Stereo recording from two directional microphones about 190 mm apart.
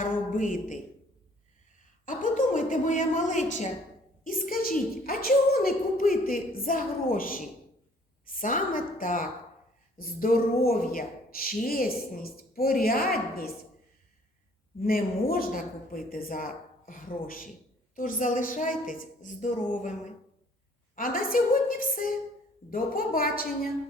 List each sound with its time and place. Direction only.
0.0 s a sound: 45° left (ahead or behind)
2.0 s a woman's voice: 45° left (ahead or behind)
14.8 s a woman's voice: 50° left (ahead or behind)
20.9 s a woman's voice: 45° left (ahead or behind)